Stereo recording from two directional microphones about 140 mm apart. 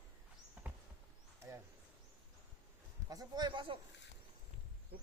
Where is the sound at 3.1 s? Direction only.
30° right (ahead or behind).